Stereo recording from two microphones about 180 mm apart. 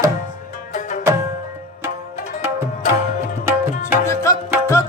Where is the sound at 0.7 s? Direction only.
45° left (ahead or behind).